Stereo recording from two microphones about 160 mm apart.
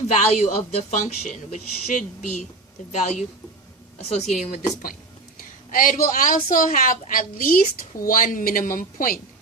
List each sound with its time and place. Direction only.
0.1 s a woman's voice: 45° left (ahead or behind)
5.7 s speech: 60° left (ahead or behind)